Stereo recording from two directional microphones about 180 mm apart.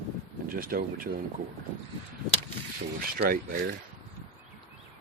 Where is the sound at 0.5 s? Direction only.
55° right (ahead or behind).